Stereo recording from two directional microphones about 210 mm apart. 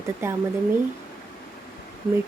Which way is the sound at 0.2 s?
15° right (ahead or behind).